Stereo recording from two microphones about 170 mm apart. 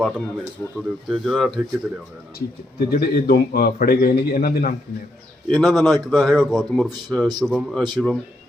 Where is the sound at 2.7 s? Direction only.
65° left (ahead or behind).